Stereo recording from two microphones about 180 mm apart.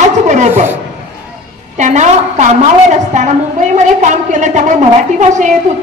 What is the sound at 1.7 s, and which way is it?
A woman's voice, 40° right (ahead or behind).